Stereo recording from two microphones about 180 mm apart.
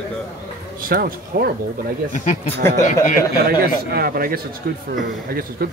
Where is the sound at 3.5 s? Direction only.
55° right (ahead or behind).